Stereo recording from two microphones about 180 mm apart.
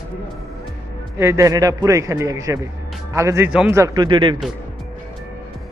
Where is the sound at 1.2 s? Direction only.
15° right (ahead or behind).